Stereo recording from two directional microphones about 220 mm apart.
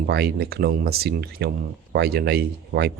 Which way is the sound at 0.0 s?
45° right (ahead or behind).